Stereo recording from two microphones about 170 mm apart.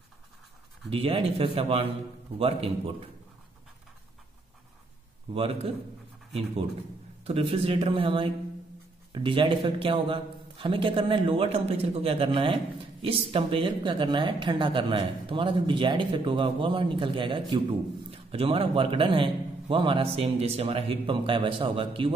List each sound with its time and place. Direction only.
0.8 s a man's voice: 35° right (ahead or behind)
5.3 s a man's voice: 35° right (ahead or behind)
7.2 s a man's voice: 35° right (ahead or behind)